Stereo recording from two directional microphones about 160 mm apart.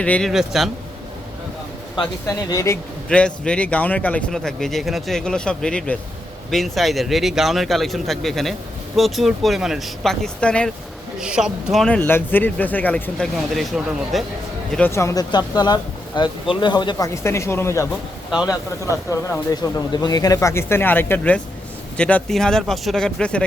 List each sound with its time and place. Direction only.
0.0 s speech: 5° left (ahead or behind)
2.2 s speech: 20° left (ahead or behind)
3.1 s speech: 5° left (ahead or behind)
11.2 s speech: 5° right (ahead or behind)
14.7 s speech: 10° left (ahead or behind)
19.5 s speech: 25° left (ahead or behind); by 23.4 s 5° left (ahead or behind)